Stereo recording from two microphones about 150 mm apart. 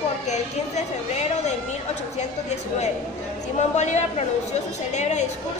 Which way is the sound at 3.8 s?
50° left (ahead or behind).